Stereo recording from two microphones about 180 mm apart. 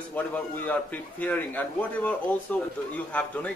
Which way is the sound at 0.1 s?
10° left (ahead or behind).